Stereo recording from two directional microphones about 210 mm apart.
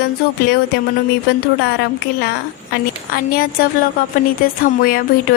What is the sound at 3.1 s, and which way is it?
Speech, 45° left (ahead or behind).